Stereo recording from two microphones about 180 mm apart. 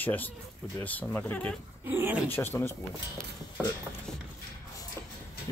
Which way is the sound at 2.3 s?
10° left (ahead or behind).